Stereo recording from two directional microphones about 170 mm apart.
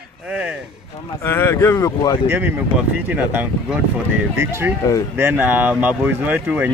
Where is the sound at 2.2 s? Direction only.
10° right (ahead or behind).